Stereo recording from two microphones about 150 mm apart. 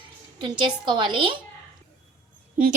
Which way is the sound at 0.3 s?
30° right (ahead or behind).